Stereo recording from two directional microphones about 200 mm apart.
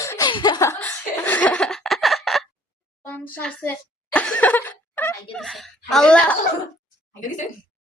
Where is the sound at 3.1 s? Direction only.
10° left (ahead or behind).